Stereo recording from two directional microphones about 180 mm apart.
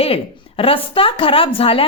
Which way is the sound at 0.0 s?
30° left (ahead or behind).